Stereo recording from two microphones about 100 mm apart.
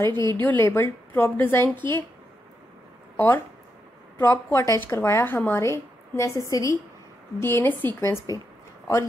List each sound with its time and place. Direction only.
0.1 s speech: 45° right (ahead or behind)
0.4 s a woman's voice: 20° left (ahead or behind)
3.2 s a woman's voice: 20° left (ahead or behind)